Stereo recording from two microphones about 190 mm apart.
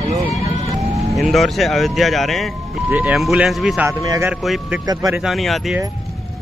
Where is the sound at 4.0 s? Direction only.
20° right (ahead or behind).